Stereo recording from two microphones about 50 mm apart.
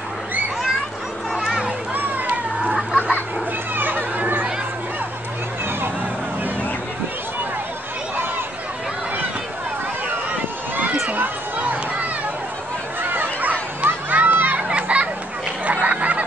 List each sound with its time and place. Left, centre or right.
1.3 s children playing: centre
2.0 s cat: right
2.6 s chicken: centre
3.0 s a sound: left
3.7 s children playing: right
11.1 s a sound: right
13.0 s children playing: right
14.1 s crowd: right
14.7 s children playing: right
15.6 s a sound: right